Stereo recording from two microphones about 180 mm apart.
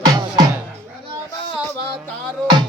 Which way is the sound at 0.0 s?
20° right (ahead or behind).